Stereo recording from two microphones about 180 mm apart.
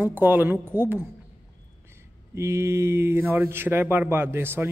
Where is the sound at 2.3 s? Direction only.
15° right (ahead or behind).